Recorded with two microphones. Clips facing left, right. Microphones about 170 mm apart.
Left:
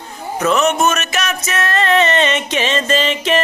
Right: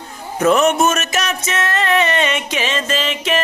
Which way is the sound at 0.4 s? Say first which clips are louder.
Right 2 dB; 50° right (ahead or behind).